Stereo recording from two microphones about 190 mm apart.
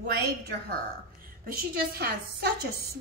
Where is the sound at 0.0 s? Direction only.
60° right (ahead or behind).